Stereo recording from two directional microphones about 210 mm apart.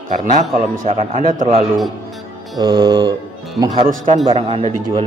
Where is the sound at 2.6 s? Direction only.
20° right (ahead or behind).